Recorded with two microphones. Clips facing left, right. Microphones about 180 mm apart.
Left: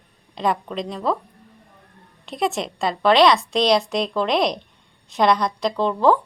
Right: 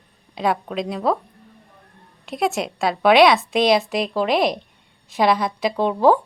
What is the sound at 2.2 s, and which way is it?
A woman's voice, centre (ahead or behind).